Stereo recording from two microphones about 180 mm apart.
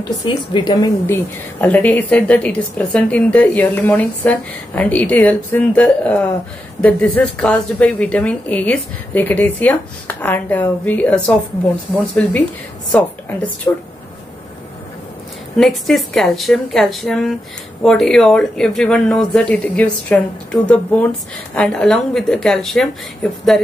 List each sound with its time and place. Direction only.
0.2 s a woman's voice: 25° left (ahead or behind); by 13.5 s 10° left (ahead or behind)
15.5 s a woman's voice: centre (ahead or behind)